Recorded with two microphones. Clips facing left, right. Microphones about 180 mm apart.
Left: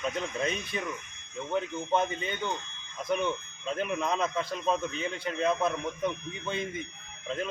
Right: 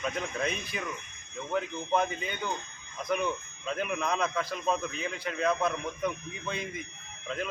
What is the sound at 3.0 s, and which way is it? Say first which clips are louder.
Speech: left 1 dB; centre (ahead or behind).